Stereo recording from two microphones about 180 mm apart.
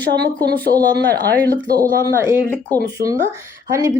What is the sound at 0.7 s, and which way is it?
A woman's voice, 20° right (ahead or behind).